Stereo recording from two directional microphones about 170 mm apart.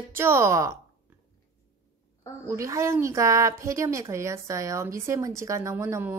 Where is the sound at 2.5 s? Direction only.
15° right (ahead or behind).